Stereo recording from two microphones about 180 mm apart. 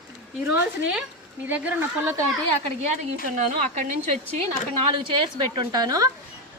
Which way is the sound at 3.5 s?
40° right (ahead or behind).